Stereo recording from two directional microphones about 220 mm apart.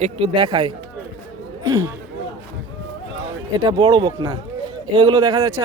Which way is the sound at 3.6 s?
20° right (ahead or behind).